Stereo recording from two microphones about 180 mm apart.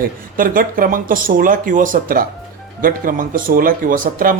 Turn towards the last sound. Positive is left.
turn(degrees=-50)  # may be behind; listen again after turning